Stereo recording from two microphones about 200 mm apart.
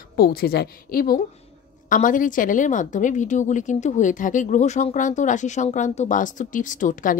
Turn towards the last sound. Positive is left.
turn(degrees=40)  # may be behind; listen again after turning